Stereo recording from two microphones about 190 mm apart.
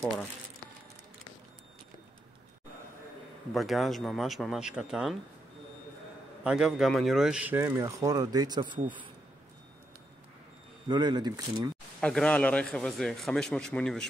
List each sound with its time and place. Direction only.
3.5 s a man's voice: centre (ahead or behind)
6.4 s speech: 5° right (ahead or behind); by 8.7 s 25° right (ahead or behind)
10.9 s speech: 25° right (ahead or behind)
12.0 s a man's voice: 5° left (ahead or behind)